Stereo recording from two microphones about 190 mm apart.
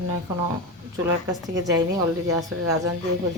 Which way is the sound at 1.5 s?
20° right (ahead or behind).